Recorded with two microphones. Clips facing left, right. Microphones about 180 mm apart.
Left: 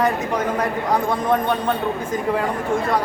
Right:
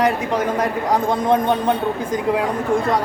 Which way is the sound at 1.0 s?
20° right (ahead or behind).